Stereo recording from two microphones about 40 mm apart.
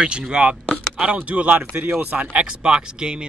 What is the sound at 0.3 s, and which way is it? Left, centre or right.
Speech, right.